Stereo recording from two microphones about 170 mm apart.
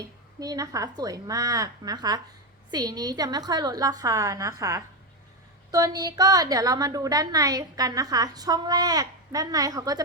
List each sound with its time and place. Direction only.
0.0 s a woman's voice: 20° right (ahead or behind)